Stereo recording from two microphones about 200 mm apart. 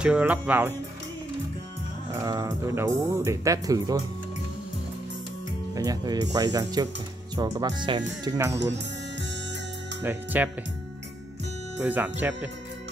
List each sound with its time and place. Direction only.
0.0 s speech: 5° right (ahead or behind)
2.1 s speech: 20° right (ahead or behind)
5.8 s speech: 20° right (ahead or behind)
10.0 s speech: 10° right (ahead or behind)
11.8 s speech: 10° right (ahead or behind)